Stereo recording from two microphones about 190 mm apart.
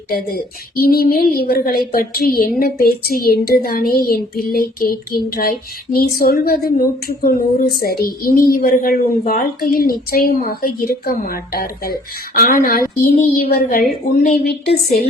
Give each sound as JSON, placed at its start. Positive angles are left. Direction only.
{"t": 0.8, "sound": "a woman's voice", "side_deg": 50}